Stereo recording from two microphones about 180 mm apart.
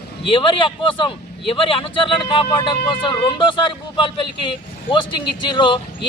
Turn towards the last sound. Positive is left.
turn(degrees=25)  # may be behind; listen again after turning